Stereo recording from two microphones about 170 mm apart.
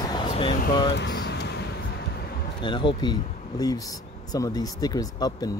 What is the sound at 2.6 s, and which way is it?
Speech, 30° left (ahead or behind).